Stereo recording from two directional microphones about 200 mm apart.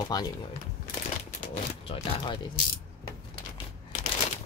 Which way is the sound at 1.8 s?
20° left (ahead or behind).